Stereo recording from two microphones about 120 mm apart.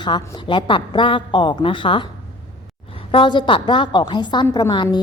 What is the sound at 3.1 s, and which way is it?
A woman's voice, 45° left (ahead or behind).